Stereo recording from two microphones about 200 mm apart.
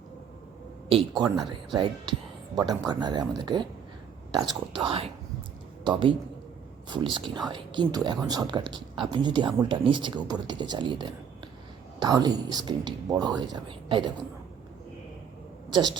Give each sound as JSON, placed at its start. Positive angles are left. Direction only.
{"t": 0.9, "sound": "a man's voice", "side_deg": -25}